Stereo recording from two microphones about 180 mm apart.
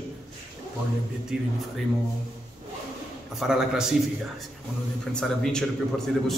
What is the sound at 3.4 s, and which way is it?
Speech, 5° right (ahead or behind).